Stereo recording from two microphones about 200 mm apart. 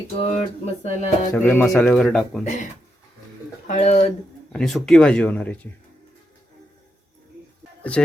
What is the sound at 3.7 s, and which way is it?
Speech, 35° left (ahead or behind).